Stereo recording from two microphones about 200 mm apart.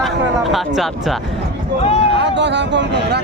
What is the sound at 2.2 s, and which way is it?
Speech, 60° right (ahead or behind).